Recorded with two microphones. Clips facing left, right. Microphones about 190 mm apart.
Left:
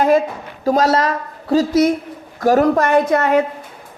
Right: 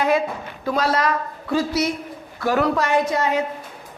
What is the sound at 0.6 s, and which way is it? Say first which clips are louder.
A woman's voice: left 6 dB; 40° left (ahead or behind).